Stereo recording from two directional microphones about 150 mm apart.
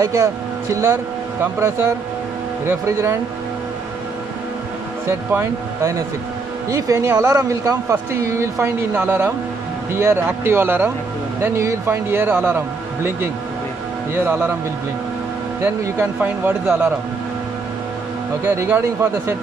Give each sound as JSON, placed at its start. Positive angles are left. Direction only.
{"t": 0.0, "sound": "speech", "side_deg": -20}
{"t": 5.3, "sound": "speech", "side_deg": -20}
{"t": 15.6, "sound": "speech", "side_deg": -15}
{"t": 18.4, "sound": "speech", "side_deg": -15}